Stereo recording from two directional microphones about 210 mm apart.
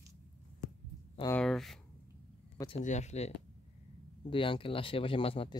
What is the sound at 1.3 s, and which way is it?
Speech, centre (ahead or behind).